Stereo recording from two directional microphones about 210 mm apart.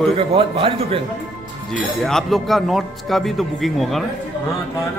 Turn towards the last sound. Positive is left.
turn(degrees=0)  # may be behind; listen again after turning